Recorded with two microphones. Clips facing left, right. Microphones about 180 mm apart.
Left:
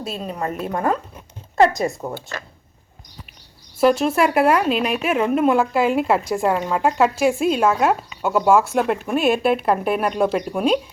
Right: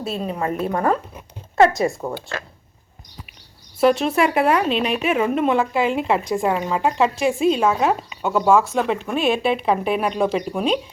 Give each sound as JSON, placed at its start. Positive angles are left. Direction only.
{"t": 0.0, "sound": "a woman's voice", "side_deg": 0}
{"t": 0.7, "sound": "speech", "side_deg": -40}
{"t": 3.8, "sound": "a woman's voice", "side_deg": 0}